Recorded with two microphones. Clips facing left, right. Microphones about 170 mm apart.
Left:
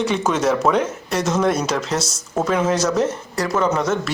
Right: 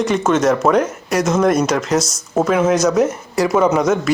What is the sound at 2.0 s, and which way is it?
Speech, 30° left (ahead or behind).